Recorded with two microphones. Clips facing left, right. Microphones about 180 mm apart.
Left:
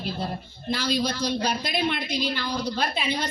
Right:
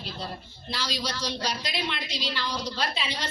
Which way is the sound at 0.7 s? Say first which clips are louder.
Left 7 dB; 55° left (ahead or behind).